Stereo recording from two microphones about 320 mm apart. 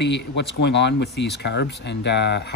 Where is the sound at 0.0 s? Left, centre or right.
Left.